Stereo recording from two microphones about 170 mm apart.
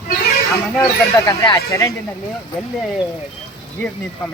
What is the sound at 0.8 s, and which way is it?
Speech, 20° left (ahead or behind).